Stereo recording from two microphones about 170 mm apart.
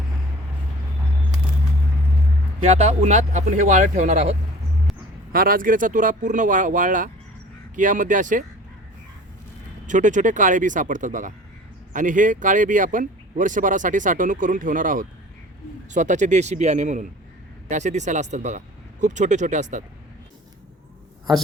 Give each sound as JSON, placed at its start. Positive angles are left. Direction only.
{"t": 2.6, "sound": "speech", "side_deg": -40}
{"t": 5.3, "sound": "speech", "side_deg": -60}
{"t": 9.8, "sound": "speech", "side_deg": -45}